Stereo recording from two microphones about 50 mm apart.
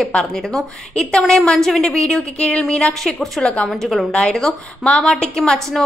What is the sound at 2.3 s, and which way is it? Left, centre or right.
Speech, left.